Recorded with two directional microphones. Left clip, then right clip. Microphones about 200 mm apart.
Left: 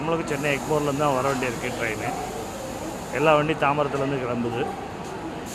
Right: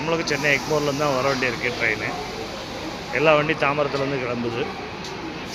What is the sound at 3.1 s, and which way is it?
Speech, 10° left (ahead or behind).